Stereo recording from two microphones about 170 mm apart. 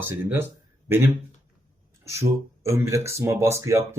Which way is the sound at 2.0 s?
15° right (ahead or behind).